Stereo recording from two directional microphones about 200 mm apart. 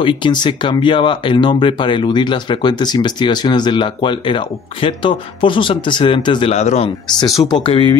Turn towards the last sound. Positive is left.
turn(degrees=25)  # may be behind; listen again after turning